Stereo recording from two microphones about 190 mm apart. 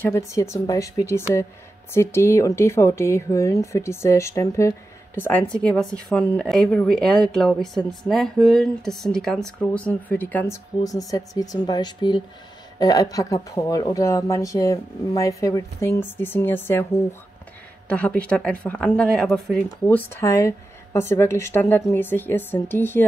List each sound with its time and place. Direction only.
0.0 s speech: 15° left (ahead or behind)